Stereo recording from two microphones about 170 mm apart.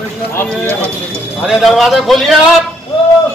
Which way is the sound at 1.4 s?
Centre (ahead or behind).